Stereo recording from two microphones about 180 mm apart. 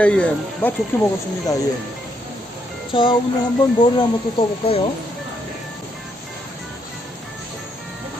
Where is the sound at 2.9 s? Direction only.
30° left (ahead or behind).